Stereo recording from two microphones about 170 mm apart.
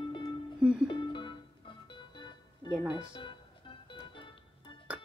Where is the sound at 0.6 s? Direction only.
5° right (ahead or behind).